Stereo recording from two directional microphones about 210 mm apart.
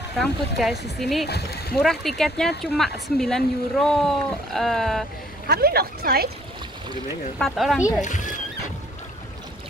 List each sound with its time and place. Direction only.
0.2 s speech: centre (ahead or behind)
1.2 s speech: 50° left (ahead or behind)
1.8 s speech: centre (ahead or behind)
5.5 s speech: 45° right (ahead or behind)
7.3 s speech: centre (ahead or behind)
8.0 s speech: 35° left (ahead or behind)